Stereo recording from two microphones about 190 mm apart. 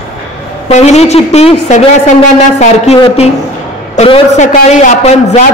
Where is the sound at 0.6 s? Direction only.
35° left (ahead or behind).